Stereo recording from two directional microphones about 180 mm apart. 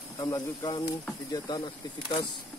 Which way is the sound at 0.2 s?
20° left (ahead or behind).